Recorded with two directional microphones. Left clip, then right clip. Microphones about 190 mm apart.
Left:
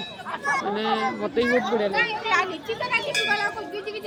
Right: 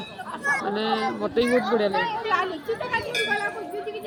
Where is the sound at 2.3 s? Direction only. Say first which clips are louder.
Left 1 dB; 55° left (ahead or behind).